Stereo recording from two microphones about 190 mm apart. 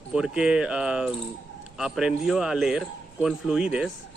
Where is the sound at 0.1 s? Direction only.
5° right (ahead or behind).